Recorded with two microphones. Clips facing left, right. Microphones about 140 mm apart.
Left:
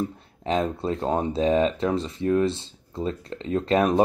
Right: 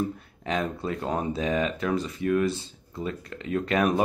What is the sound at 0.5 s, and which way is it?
Speech, 30° left (ahead or behind).